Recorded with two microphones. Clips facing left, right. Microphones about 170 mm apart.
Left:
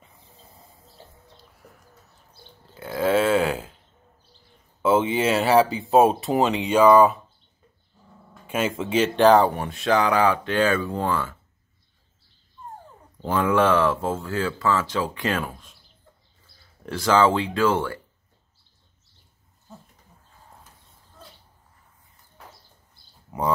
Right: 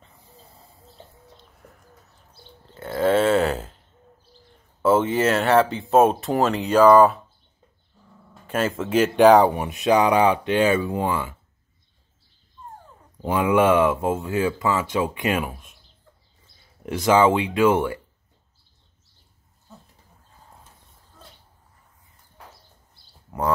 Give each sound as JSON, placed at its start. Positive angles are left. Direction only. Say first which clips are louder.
{"t": 2.6, "sound": "a sound", "louder": "right 2 dB", "side_deg": 5}
{"t": 4.8, "sound": "speech", "louder": "right 1 dB", "side_deg": 0}
{"t": 8.5, "sound": "speech", "louder": "right 1 dB", "side_deg": 5}
{"t": 13.2, "sound": "speech", "louder": "right 2 dB", "side_deg": -15}
{"t": 16.8, "sound": "speech", "louder": "right 2 dB", "side_deg": -20}